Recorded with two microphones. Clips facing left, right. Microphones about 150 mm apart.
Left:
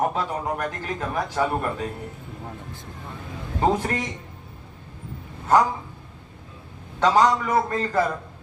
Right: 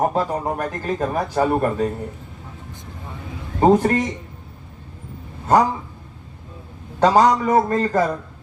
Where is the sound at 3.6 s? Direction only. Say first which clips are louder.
Right 8 dB; 45° right (ahead or behind).